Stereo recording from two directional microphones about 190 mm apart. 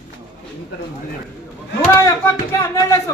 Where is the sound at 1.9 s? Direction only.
15° left (ahead or behind).